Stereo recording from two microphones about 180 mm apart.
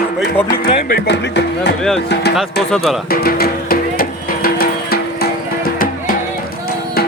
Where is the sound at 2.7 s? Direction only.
Centre (ahead or behind).